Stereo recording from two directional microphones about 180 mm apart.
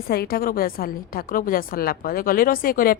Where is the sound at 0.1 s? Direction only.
60° left (ahead or behind).